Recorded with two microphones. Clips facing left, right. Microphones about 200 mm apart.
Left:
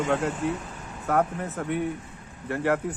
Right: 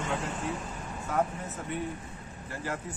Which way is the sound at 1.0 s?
60° left (ahead or behind).